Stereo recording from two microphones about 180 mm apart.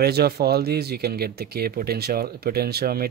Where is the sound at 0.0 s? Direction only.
60° right (ahead or behind).